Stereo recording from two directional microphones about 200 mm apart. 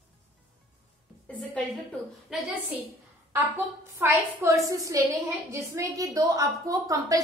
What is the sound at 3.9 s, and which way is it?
A woman's voice, 15° right (ahead or behind).